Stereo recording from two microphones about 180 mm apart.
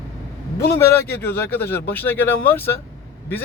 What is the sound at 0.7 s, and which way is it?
Speech, 15° left (ahead or behind).